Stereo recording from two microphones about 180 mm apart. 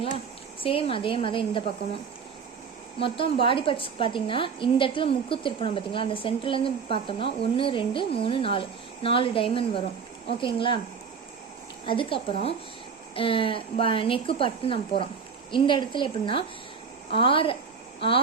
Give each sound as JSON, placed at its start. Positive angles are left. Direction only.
{"t": 0.6, "sound": "a woman's voice", "side_deg": 30}
{"t": 3.0, "sound": "a woman's voice", "side_deg": 30}
{"t": 11.9, "sound": "a woman's voice", "side_deg": 30}